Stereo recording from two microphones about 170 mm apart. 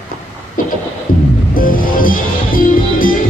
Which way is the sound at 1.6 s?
55° left (ahead or behind).